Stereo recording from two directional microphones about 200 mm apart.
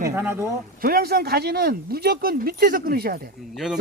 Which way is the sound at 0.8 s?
50° right (ahead or behind).